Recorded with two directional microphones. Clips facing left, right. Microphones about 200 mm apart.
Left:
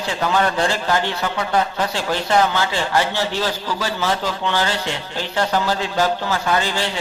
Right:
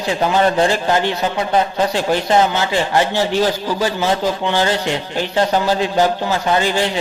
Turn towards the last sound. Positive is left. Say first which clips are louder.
# right 4 dB
turn(degrees=-15)  # may be behind; listen again after turning